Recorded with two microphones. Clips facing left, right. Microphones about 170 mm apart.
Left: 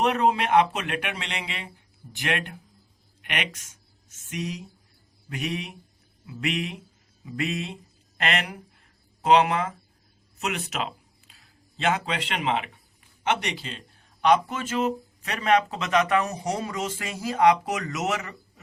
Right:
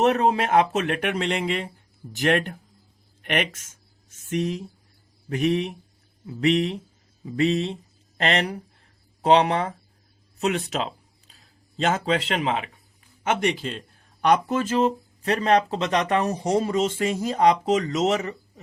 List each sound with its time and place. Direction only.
0.0 s speech: 35° right (ahead or behind)
11.8 s speech: 40° right (ahead or behind)